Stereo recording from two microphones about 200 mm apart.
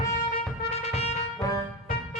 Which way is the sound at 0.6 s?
30° left (ahead or behind).